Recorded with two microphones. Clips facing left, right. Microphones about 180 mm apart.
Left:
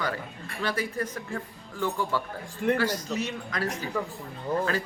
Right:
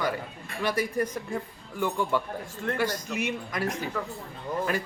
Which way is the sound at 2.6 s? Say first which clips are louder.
Left 7 dB; 20° left (ahead or behind).